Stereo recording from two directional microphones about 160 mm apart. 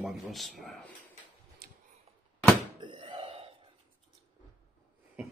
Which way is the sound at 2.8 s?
30° right (ahead or behind).